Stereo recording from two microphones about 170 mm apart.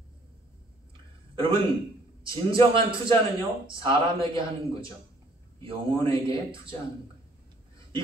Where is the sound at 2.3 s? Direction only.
30° right (ahead or behind).